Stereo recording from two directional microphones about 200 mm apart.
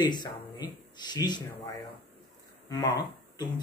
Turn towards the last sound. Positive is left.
turn(degrees=20)  # may be behind; listen again after turning